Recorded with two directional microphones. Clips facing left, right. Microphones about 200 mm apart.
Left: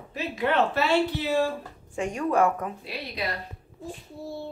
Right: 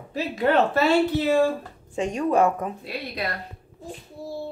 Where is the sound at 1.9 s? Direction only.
20° right (ahead or behind).